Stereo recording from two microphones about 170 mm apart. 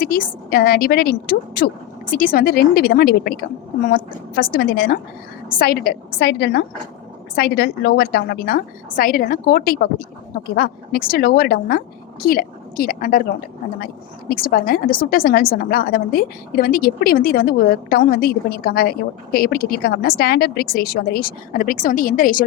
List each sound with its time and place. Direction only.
0.0 s a woman's voice: 60° left (ahead or behind)
13.7 s speech: 65° left (ahead or behind)